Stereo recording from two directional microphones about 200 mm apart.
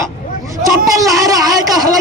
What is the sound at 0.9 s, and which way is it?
Speech, 15° right (ahead or behind).